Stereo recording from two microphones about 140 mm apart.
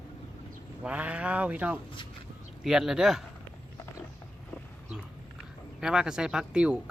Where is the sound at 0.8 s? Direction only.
10° right (ahead or behind).